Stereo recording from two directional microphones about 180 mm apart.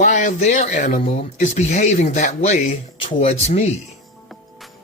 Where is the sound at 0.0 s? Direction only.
45° left (ahead or behind).